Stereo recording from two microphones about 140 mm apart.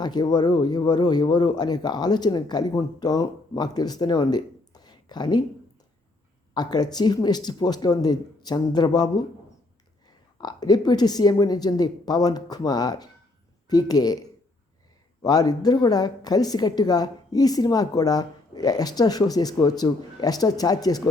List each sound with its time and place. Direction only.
0.0 s a woman's voice: 30° left (ahead or behind)
6.5 s a woman's voice: 30° left (ahead or behind)
10.4 s a woman's voice: 30° left (ahead or behind)